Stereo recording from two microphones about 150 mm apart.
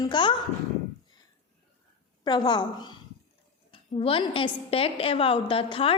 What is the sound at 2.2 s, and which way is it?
A woman's voice, 30° left (ahead or behind).